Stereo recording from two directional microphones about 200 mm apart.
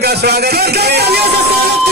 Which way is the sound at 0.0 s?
55° right (ahead or behind).